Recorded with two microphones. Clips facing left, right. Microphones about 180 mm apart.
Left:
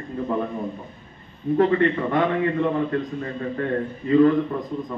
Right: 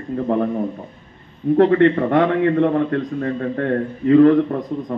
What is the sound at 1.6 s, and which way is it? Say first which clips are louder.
Speech: right 5 dB; 75° right (ahead or behind).